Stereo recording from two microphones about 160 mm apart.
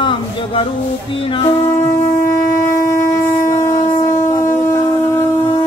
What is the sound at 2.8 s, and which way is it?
Shofar, 15° left (ahead or behind).